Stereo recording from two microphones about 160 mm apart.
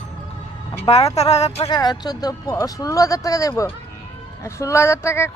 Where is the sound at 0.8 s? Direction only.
40° left (ahead or behind).